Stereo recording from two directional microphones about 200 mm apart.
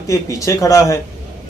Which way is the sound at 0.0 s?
15° left (ahead or behind).